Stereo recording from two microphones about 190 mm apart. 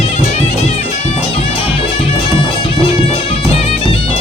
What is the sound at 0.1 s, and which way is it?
Bagpipes, 35° left (ahead or behind).